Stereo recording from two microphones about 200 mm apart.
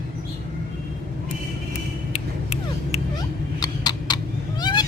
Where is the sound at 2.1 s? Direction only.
30° left (ahead or behind).